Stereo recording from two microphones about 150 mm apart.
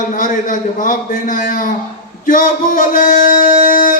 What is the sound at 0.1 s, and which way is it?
A man's voice, 65° left (ahead or behind).